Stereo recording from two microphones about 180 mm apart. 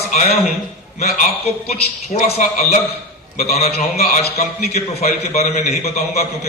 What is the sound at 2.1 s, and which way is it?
A man's voice, 40° left (ahead or behind).